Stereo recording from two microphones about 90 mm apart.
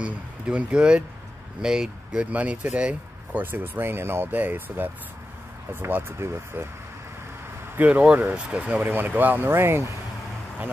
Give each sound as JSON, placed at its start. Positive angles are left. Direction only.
{"t": 0.0, "sound": "speech", "side_deg": -15}
{"t": 7.7, "sound": "speech", "side_deg": -15}